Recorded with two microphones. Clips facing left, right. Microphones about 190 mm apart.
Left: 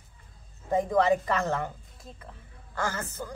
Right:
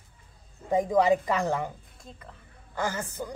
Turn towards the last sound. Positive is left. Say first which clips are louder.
# right 1 dB
turn(degrees=-15)  # may be behind; listen again after turning